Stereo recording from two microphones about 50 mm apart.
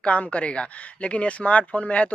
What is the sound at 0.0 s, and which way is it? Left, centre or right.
Speech, left.